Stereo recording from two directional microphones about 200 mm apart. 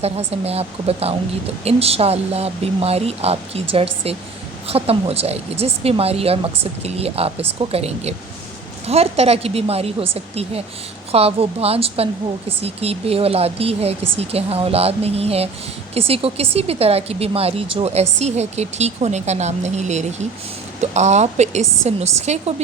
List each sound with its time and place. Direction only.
0.0 s speech: 30° right (ahead or behind)